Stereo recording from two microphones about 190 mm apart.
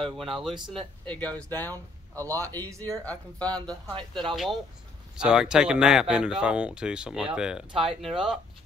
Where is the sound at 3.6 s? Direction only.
25° right (ahead or behind).